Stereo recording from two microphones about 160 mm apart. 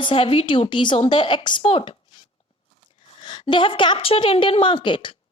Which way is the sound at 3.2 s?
30° left (ahead or behind).